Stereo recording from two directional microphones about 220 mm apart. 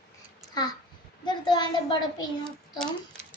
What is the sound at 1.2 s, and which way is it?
A woman's voice, 20° left (ahead or behind).